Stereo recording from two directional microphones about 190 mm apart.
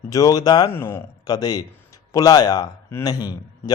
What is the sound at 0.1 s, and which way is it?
A man's voice, 20° left (ahead or behind).